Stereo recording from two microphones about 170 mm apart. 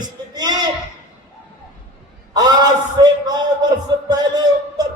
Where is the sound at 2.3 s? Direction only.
25° right (ahead or behind).